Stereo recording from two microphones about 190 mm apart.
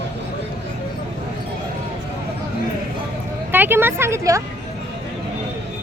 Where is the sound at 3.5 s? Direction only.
10° right (ahead or behind).